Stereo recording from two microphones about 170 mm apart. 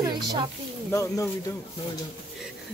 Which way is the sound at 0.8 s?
20° left (ahead or behind).